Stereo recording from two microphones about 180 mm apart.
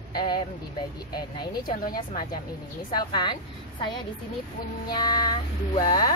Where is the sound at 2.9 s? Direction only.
25° left (ahead or behind).